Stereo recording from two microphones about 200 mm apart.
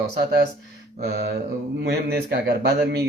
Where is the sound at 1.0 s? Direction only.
50° right (ahead or behind).